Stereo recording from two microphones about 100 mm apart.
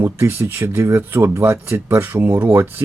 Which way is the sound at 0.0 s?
25° right (ahead or behind).